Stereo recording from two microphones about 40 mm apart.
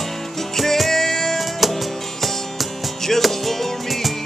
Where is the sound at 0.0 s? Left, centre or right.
Centre.